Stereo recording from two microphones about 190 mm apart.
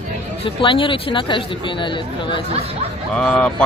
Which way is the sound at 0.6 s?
25° left (ahead or behind).